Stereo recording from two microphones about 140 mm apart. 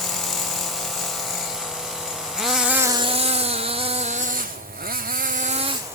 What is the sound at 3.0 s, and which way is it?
Chainsaw, 45° right (ahead or behind).